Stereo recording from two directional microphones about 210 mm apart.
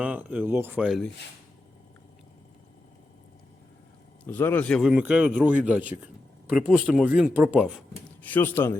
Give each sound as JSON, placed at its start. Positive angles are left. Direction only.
{"t": 0.0, "sound": "speech", "side_deg": -5}
{"t": 4.3, "sound": "speech", "side_deg": 10}
{"t": 4.8, "sound": "speech", "side_deg": -5}
{"t": 8.2, "sound": "speech", "side_deg": 10}